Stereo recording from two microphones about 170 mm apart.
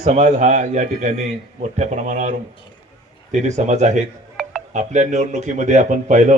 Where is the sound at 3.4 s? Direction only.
45° right (ahead or behind).